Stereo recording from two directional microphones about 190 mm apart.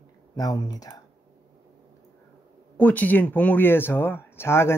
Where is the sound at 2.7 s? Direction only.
10° left (ahead or behind).